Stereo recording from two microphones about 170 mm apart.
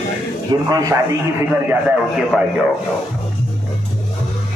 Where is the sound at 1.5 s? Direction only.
10° right (ahead or behind).